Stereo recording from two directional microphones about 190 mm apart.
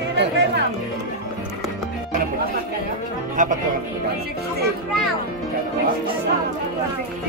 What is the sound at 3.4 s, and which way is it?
Speech, 40° right (ahead or behind).